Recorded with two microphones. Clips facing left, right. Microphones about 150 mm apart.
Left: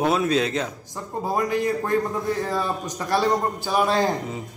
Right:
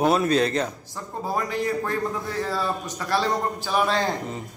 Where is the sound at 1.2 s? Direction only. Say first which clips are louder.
Left 3 dB; 15° left (ahead or behind).